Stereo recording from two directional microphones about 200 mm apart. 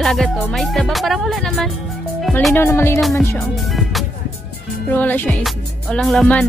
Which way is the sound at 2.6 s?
10° left (ahead or behind).